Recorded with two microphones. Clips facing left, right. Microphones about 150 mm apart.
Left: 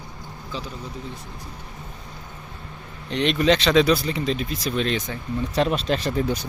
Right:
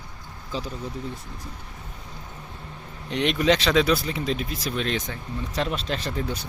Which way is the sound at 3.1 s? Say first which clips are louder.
Left 2 dB; 10° right (ahead or behind).